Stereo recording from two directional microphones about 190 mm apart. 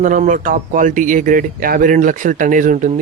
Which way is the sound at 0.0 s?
40° right (ahead or behind).